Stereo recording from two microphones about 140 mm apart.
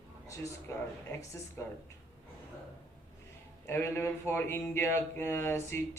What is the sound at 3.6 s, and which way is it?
Speech, 15° left (ahead or behind).